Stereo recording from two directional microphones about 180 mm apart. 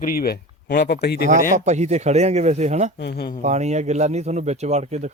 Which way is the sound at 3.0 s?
70° left (ahead or behind).